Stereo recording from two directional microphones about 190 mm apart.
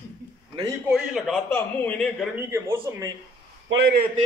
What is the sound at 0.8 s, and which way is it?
Speech, 5° right (ahead or behind).